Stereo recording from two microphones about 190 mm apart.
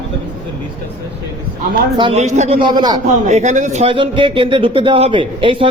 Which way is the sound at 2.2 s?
35° right (ahead or behind).